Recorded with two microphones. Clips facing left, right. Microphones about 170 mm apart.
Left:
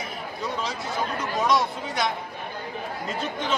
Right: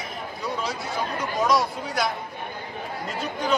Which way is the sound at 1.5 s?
Centre (ahead or behind).